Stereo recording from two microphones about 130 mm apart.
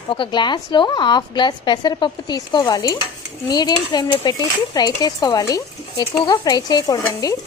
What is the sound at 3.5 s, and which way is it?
Dishes, 30° left (ahead or behind).